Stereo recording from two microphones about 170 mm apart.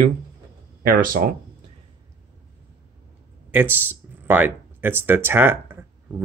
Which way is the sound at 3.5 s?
10° right (ahead or behind).